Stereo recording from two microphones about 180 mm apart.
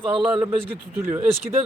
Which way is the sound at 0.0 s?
30° right (ahead or behind).